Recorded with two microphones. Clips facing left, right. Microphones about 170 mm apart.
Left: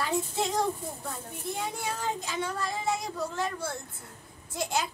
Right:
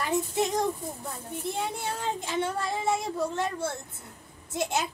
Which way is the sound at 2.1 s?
25° right (ahead or behind).